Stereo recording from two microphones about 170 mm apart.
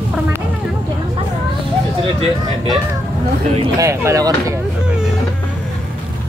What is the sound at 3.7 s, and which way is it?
Speech, 20° right (ahead or behind).